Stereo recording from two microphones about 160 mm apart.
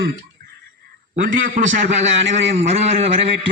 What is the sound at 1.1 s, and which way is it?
A man's voice, 55° right (ahead or behind).